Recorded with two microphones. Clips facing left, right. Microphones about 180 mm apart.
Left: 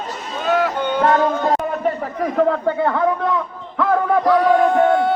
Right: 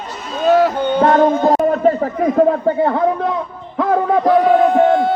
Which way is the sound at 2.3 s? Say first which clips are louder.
Right 2 dB; 20° right (ahead or behind).